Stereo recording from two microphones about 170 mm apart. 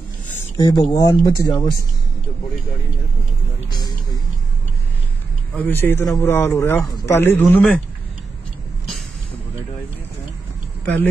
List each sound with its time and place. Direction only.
0.6 s speech: 25° left (ahead or behind)
3.7 s speech: 25° left (ahead or behind)
5.6 s speech: 10° left (ahead or behind)